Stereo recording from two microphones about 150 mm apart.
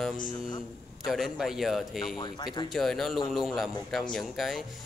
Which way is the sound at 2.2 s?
30° left (ahead or behind).